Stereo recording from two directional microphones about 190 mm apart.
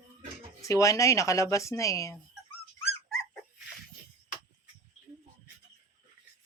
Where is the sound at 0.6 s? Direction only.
15° left (ahead or behind).